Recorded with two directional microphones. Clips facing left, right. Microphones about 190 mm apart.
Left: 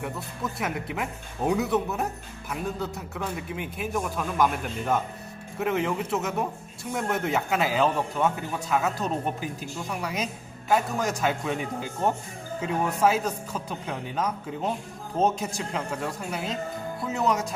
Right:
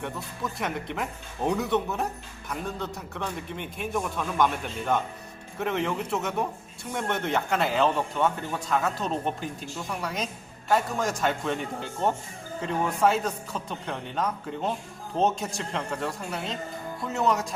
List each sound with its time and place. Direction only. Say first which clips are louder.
0.6 s a man's voice: even; 5° left (ahead or behind)